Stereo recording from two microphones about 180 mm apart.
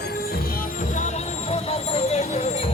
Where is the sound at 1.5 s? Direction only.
35° left (ahead or behind).